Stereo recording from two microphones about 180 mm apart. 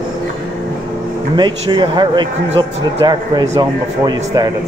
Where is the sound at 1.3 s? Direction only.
25° right (ahead or behind).